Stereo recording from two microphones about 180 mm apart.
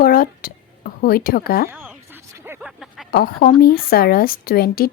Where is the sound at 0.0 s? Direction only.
55° left (ahead or behind).